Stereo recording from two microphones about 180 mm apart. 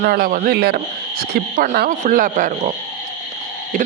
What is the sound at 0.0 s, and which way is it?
A man's voice, 55° right (ahead or behind).